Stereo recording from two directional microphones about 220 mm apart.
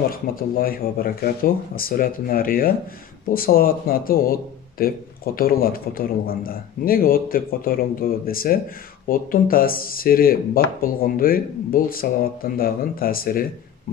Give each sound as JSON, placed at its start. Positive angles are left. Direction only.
{"t": 0.1, "sound": "speech", "side_deg": 40}